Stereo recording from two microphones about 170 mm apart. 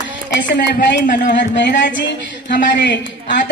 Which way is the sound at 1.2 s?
90° left.